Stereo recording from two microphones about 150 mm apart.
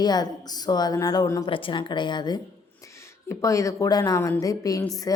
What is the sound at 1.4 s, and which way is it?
A woman's voice, 35° left (ahead or behind).